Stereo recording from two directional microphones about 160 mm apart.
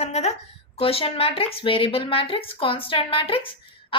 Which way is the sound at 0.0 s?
45° left (ahead or behind).